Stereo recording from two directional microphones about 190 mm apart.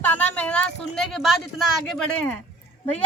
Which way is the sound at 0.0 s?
10° left (ahead or behind).